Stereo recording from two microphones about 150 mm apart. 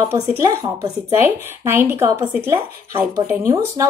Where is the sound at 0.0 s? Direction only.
20° right (ahead or behind).